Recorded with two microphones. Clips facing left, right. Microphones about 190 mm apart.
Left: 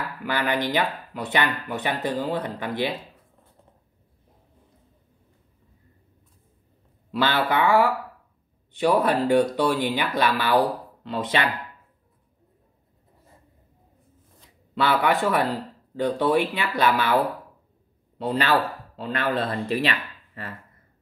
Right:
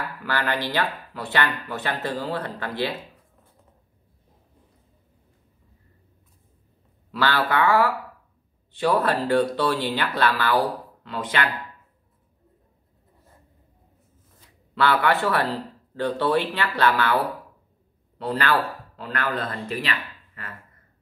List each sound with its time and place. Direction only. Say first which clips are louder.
0.2 s speech: left 2 dB; 15° left (ahead or behind)
7.1 s speech: left 1 dB; 20° left (ahead or behind)
14.8 s a man's voice: even; 15° left (ahead or behind); by 19.8 s 30° left (ahead or behind)